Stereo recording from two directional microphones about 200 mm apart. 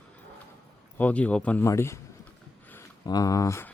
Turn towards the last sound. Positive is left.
turn(degrees=15)  # may be behind; listen again after turning